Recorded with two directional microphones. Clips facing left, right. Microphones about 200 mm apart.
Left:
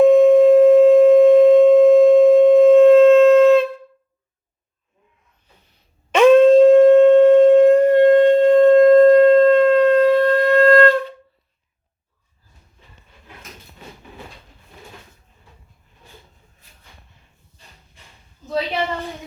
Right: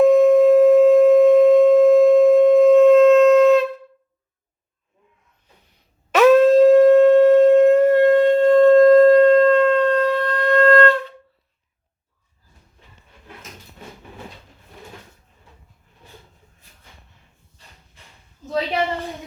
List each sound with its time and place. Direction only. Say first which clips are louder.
0.0 s sine wave: left 2 dB; centre (ahead or behind)
6.1 s shofar: left 2 dB; 5° right (ahead or behind)
8.2 s sine wave: left 1 dB; 5° right (ahead or behind)
9.4 s shofar: left 3 dB; 20° left (ahead or behind)
10.1 s shofar: left 7 dB; 25° left (ahead or behind)